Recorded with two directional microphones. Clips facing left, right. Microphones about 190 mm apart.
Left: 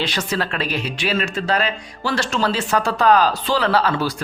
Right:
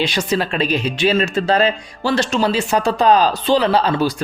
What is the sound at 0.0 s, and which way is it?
Speech, 15° right (ahead or behind).